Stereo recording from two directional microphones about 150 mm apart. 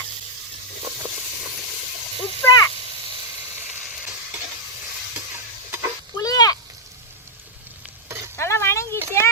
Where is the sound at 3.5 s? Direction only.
10° right (ahead or behind).